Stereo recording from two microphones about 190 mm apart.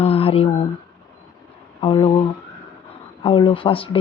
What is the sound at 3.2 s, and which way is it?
Speech, 25° left (ahead or behind).